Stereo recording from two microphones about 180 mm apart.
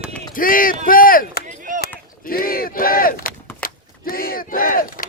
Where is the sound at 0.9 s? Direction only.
50° left (ahead or behind).